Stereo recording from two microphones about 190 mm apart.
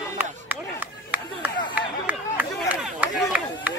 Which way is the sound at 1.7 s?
10° right (ahead or behind).